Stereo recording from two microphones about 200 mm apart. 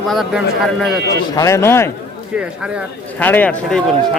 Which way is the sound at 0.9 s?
55° right (ahead or behind).